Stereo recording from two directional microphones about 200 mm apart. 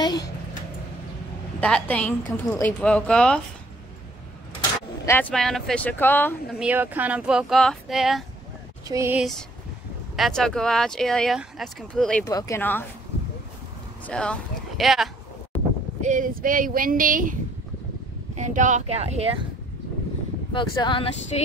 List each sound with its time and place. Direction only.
0.0 s a sound: 20° left (ahead or behind)
1.6 s speech: 5° left (ahead or behind)
5.0 s speech: 10° left (ahead or behind)
6.6 s speech: 10° right (ahead or behind)
8.8 s a sound: 15° right (ahead or behind)
10.1 s speech: centre (ahead or behind)
12.3 s speech: 15° left (ahead or behind)
14.0 s speech: 5° left (ahead or behind)
16.0 s speech: 40° right (ahead or behind)
20.5 s speech: 25° left (ahead or behind)